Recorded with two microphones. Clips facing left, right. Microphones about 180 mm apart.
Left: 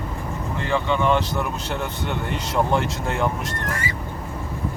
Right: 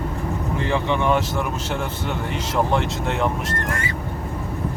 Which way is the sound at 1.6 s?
Centre (ahead or behind).